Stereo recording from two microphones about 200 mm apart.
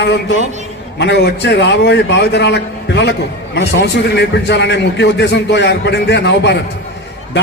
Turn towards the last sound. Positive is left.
turn(degrees=60)  # may be behind; listen again after turning